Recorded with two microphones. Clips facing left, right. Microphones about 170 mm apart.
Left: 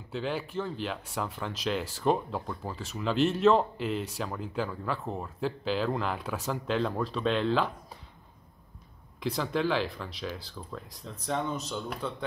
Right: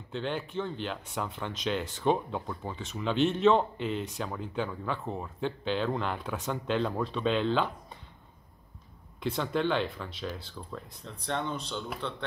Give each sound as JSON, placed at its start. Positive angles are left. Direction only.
{"t": 0.1, "sound": "speech", "side_deg": 5}
{"t": 9.2, "sound": "speech", "side_deg": 0}